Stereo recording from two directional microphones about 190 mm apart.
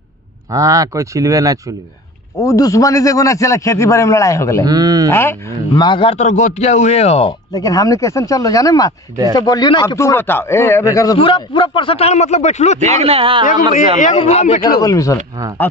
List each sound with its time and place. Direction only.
0.5 s speech: 15° right (ahead or behind)
2.3 s a man's voice: 15° left (ahead or behind)
4.6 s speech: 20° right (ahead or behind)
5.1 s a man's voice: 10° left (ahead or behind)
5.9 s speech: 25° left (ahead or behind)
7.5 s a man's voice: 20° left (ahead or behind); by 12.8 s 35° left (ahead or behind)
12.8 s speech: 35° right (ahead or behind)
14.1 s speech: 35° left (ahead or behind)
14.8 s a man's voice: 15° left (ahead or behind)